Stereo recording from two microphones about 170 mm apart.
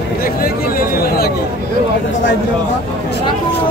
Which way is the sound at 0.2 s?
60° left (ahead or behind).